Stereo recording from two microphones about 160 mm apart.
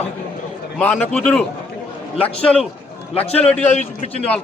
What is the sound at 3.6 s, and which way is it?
Speech, 45° left (ahead or behind).